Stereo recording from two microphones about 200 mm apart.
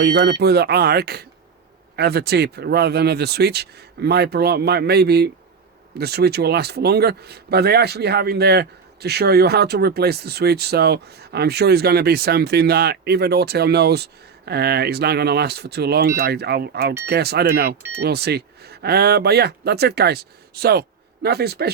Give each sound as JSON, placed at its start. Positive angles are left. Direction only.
{"t": 0.0, "sound": "speech", "side_deg": -55}